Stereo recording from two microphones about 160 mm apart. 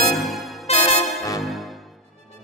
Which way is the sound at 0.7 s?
40° left (ahead or behind).